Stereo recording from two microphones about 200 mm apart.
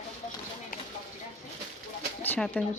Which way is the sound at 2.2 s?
5° left (ahead or behind).